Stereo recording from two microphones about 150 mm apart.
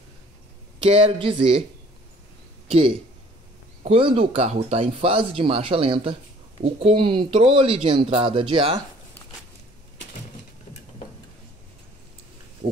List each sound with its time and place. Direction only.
0.8 s speech: 40° right (ahead or behind)
3.9 s speech: 40° right (ahead or behind)